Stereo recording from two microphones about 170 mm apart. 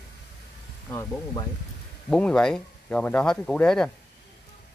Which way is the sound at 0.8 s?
15° left (ahead or behind).